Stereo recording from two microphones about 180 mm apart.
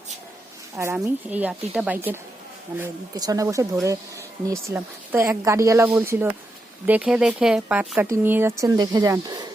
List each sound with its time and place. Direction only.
0.9 s speech: 10° right (ahead or behind)